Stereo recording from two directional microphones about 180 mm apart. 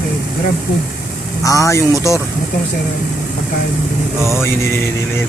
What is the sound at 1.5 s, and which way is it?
Speech, 15° left (ahead or behind).